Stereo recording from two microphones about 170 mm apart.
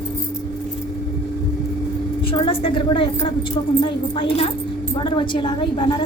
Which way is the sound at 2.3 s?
30° left (ahead or behind).